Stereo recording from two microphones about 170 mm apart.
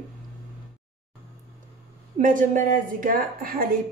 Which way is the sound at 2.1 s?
50° right (ahead or behind).